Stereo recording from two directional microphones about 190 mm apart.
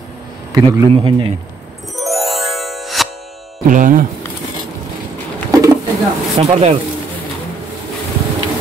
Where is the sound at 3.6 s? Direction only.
45° right (ahead or behind).